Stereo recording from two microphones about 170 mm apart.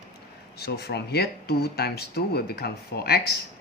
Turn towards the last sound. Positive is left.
turn(degrees=70)  # may be behind; listen again after turning